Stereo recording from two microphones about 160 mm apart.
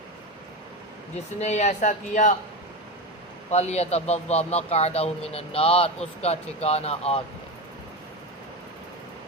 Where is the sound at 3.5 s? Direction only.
45° left (ahead or behind).